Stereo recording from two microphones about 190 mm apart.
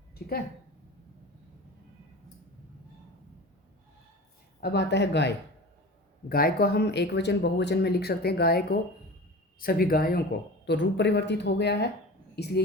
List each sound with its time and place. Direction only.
0.1 s speech: 55° left (ahead or behind)
4.6 s speech: 60° left (ahead or behind)
6.2 s speech: 50° left (ahead or behind)
10.7 s speech: 65° left (ahead or behind)